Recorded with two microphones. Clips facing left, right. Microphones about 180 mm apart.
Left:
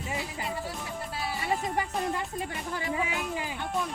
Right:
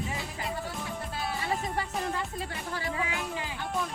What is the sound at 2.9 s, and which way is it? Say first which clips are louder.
Music: left 4 dB; 20° left (ahead or behind).